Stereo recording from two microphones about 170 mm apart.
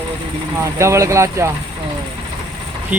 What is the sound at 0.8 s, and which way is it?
Speech, 15° right (ahead or behind).